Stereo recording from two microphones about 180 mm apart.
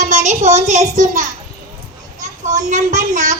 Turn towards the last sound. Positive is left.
turn(degrees=-45)  # may be behind; listen again after turning